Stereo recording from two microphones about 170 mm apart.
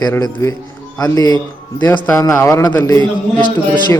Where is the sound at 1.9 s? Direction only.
10° left (ahead or behind).